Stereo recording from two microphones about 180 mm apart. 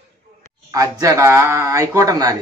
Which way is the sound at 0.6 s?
20° right (ahead or behind).